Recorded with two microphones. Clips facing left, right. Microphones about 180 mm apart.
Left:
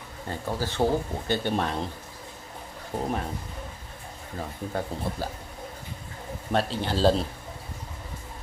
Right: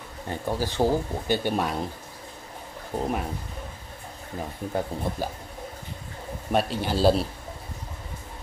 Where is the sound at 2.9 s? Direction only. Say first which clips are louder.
Right 2 dB; 5° left (ahead or behind).